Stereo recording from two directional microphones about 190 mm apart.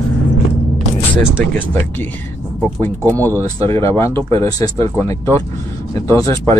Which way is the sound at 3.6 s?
15° left (ahead or behind).